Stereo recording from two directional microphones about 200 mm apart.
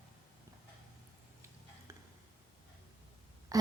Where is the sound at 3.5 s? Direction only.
15° right (ahead or behind).